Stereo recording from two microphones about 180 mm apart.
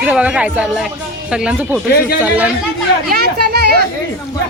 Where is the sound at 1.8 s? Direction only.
60° left (ahead or behind).